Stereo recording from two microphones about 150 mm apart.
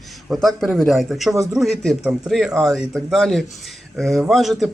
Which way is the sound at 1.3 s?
20° right (ahead or behind).